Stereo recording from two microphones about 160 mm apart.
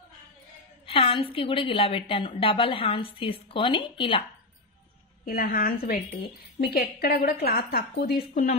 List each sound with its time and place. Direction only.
0.8 s a woman's voice: 35° left (ahead or behind)
5.2 s a woman's voice: 65° left (ahead or behind)